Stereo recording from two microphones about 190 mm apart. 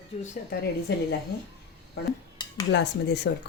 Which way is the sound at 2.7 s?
60° left (ahead or behind).